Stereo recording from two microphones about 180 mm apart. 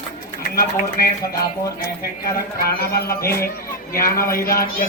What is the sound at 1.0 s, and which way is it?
Speech, 55° left (ahead or behind).